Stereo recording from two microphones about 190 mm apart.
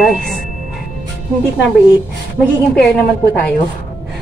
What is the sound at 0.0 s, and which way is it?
Speech, centre (ahead or behind).